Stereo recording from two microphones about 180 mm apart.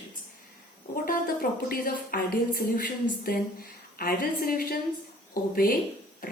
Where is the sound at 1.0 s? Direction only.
55° left (ahead or behind).